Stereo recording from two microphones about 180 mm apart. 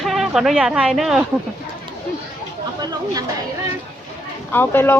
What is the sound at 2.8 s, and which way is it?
Speech, 20° right (ahead or behind).